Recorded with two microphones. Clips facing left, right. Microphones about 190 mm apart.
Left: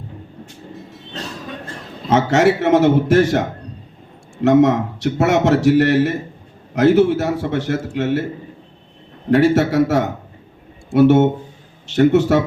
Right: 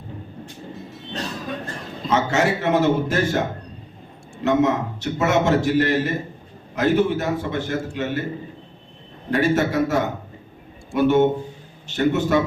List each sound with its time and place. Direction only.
0.7 s vehicle: centre (ahead or behind)
2.0 s a man's voice: 80° left
4.4 s a man's voice: 80° left
9.3 s a man's voice: 80° left